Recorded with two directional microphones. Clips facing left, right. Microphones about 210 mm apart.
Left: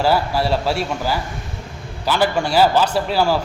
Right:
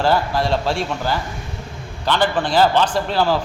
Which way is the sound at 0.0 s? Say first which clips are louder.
Even; 10° left (ahead or behind).